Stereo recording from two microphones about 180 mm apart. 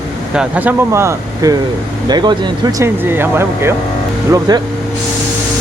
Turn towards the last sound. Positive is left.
turn(degrees=-20)  # may be behind; listen again after turning